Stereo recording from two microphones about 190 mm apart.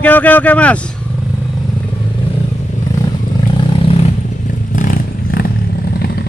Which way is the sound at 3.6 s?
30° left (ahead or behind).